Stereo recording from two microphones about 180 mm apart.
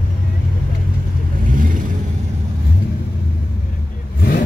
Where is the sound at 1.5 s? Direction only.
50° right (ahead or behind).